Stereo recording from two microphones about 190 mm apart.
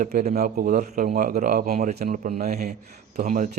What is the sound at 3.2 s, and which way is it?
Speech, 45° right (ahead or behind).